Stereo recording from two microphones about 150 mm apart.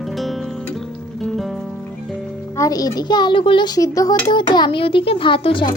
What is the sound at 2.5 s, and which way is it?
A child's voice, 25° left (ahead or behind).